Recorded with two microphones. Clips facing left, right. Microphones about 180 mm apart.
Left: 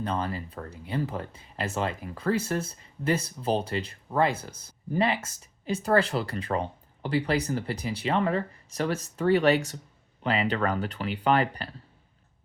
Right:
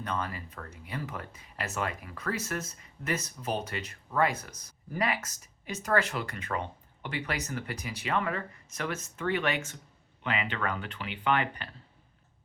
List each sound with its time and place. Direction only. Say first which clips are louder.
0.0 s speech: left 5 dB; 30° left (ahead or behind)